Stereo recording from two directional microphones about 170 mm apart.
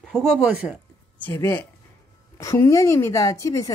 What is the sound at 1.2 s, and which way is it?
A woman's voice, 15° left (ahead or behind).